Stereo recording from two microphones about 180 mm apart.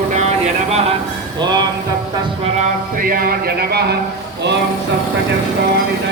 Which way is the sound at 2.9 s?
50° right (ahead or behind).